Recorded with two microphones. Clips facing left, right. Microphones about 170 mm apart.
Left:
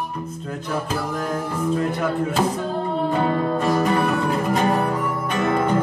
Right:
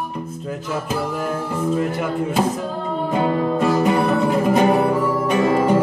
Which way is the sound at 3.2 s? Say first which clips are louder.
Right 2 dB; 15° right (ahead or behind).